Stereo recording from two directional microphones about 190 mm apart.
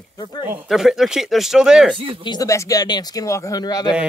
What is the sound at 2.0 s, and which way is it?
Speech, 30° right (ahead or behind).